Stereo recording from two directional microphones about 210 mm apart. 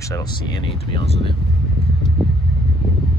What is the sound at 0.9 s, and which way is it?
Speech, 25° left (ahead or behind).